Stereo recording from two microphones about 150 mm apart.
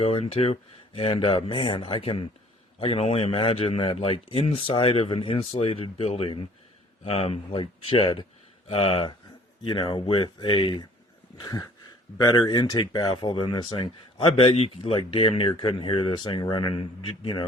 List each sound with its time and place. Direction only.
0.0 s speech: 40° left (ahead or behind)
11.3 s a sound: 25° left (ahead or behind)
12.1 s speech: 25° left (ahead or behind)